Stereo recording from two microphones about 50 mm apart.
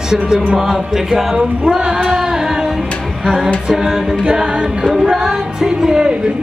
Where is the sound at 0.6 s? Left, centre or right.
Centre.